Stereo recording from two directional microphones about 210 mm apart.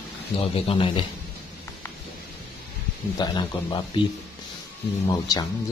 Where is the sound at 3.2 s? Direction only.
20° left (ahead or behind).